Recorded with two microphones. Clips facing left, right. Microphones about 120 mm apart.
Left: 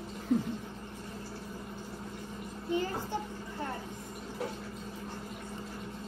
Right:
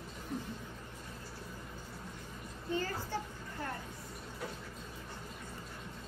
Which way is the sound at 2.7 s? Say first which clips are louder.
Left 4 dB; 20° left (ahead or behind).